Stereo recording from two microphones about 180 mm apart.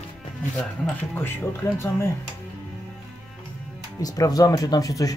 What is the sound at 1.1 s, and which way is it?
Speech, 10° left (ahead or behind).